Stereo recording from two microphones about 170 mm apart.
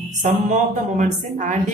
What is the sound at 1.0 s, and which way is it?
Speech, 50° right (ahead or behind).